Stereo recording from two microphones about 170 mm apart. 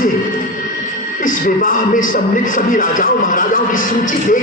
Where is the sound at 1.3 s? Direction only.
50° left (ahead or behind).